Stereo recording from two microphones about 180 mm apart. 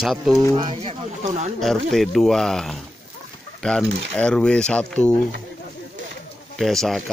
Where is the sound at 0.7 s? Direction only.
40° right (ahead or behind).